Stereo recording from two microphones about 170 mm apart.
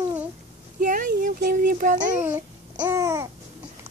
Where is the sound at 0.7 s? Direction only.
55° right (ahead or behind).